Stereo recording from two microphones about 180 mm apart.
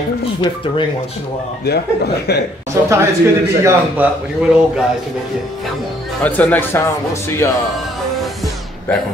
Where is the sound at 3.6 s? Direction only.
10° right (ahead or behind).